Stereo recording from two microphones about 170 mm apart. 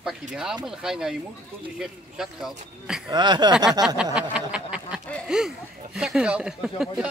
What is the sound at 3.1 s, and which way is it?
Speech, 25° right (ahead or behind).